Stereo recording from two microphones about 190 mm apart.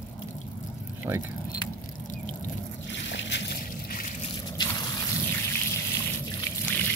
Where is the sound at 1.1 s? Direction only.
10° right (ahead or behind).